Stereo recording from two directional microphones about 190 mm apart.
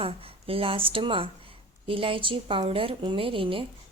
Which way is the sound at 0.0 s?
30° right (ahead or behind).